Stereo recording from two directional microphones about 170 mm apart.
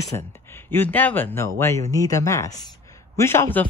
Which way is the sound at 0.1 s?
15° left (ahead or behind).